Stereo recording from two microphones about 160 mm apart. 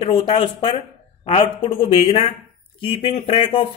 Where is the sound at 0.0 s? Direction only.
35° left (ahead or behind).